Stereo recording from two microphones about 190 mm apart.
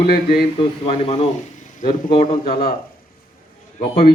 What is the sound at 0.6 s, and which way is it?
A man's voice, 30° left (ahead or behind).